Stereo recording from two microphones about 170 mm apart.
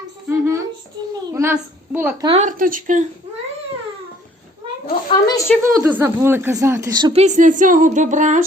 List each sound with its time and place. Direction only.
0.3 s a sound: 15° right (ahead or behind)
2.4 s a woman's voice: 50° right (ahead or behind)
5.0 s a woman's voice: 25° left (ahead or behind)
5.8 s speech: 15° right (ahead or behind)
7.1 s a woman's voice: 40° right (ahead or behind)